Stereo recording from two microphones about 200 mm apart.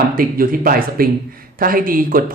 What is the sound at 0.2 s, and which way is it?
Speech, 45° right (ahead or behind).